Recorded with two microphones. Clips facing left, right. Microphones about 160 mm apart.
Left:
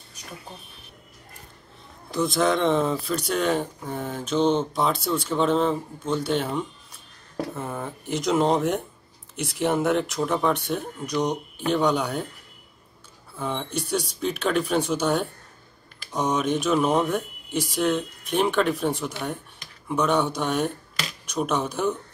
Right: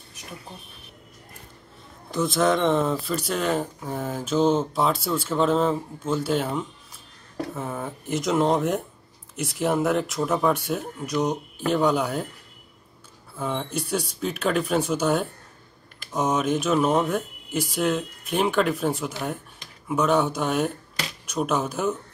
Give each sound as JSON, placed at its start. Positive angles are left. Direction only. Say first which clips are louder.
{"t": 2.0, "sound": "speech", "louder": "right 1 dB", "side_deg": 0}
{"t": 13.4, "sound": "speech", "louder": "right 1 dB", "side_deg": 0}